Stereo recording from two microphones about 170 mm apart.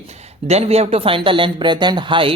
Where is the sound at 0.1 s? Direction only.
40° right (ahead or behind).